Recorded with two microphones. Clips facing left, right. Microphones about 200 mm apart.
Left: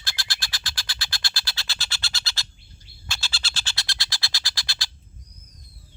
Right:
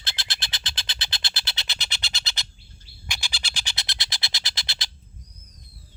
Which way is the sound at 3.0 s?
15° right (ahead or behind).